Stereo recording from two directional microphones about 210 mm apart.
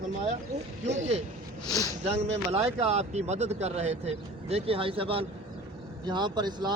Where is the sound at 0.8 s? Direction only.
35° right (ahead or behind).